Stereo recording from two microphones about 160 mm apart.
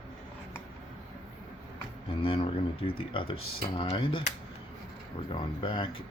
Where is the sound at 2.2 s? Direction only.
35° left (ahead or behind).